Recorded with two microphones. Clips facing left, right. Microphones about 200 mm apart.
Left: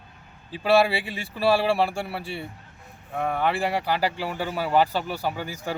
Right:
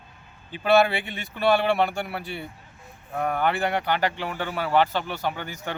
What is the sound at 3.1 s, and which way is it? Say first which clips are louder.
Speech: even; centre (ahead or behind).